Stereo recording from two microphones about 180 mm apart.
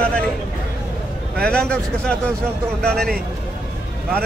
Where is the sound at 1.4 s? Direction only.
5° left (ahead or behind).